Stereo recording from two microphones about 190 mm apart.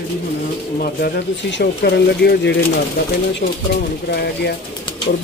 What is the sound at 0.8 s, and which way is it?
Speech, 60° left (ahead or behind).